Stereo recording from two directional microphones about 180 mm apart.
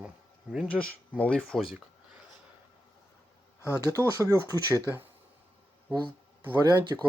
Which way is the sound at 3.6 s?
15° left (ahead or behind).